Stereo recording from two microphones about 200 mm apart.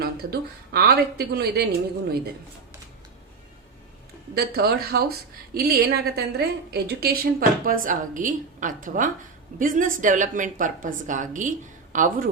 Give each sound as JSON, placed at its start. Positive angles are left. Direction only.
{"t": 0.0, "sound": "a woman's voice", "side_deg": -50}
{"t": 4.4, "sound": "a woman's voice", "side_deg": -50}